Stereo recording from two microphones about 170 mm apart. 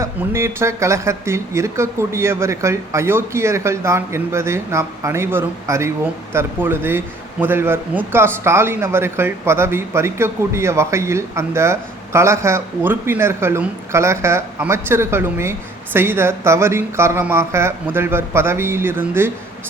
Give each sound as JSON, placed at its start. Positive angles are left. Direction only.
{"t": 0.0, "sound": "a man's voice", "side_deg": -15}